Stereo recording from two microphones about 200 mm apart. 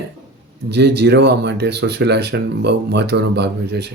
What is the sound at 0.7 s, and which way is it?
Speech, 55° right (ahead or behind).